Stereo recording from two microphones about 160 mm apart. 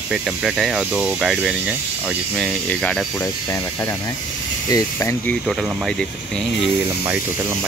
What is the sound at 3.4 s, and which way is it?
Speech, 20° left (ahead or behind).